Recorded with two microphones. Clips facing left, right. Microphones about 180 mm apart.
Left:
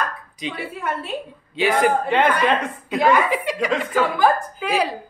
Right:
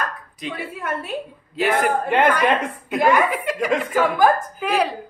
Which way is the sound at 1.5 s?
Centre (ahead or behind).